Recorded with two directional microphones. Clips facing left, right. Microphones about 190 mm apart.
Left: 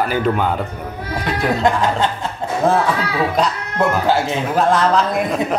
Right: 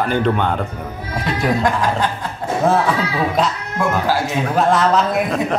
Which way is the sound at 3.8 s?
25° left (ahead or behind).